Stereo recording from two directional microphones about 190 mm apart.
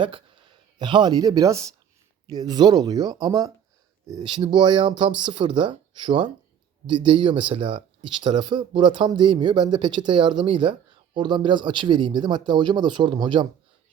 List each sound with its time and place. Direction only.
0.8 s speech: 25° right (ahead or behind)